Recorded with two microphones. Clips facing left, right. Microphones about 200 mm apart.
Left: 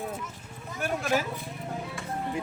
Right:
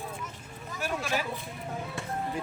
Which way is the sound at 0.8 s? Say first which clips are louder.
Left 4 dB; 50° left (ahead or behind).